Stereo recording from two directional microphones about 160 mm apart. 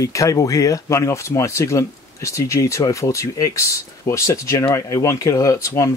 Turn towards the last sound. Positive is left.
turn(degrees=20)  # may be behind; listen again after turning